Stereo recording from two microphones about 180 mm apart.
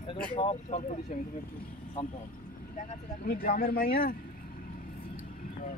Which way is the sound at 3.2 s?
55° left (ahead or behind).